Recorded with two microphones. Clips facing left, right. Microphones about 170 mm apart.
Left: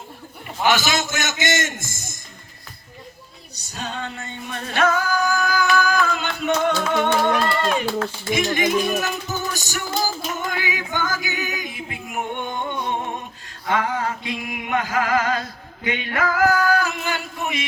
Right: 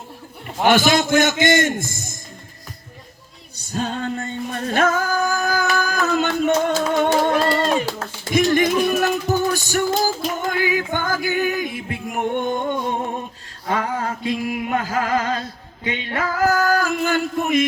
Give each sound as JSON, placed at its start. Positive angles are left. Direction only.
{"t": 0.6, "sound": "a man's voice", "side_deg": -55}
{"t": 3.5, "sound": "music", "side_deg": -45}
{"t": 8.8, "sound": "music", "side_deg": -55}
{"t": 13.7, "sound": "music", "side_deg": -35}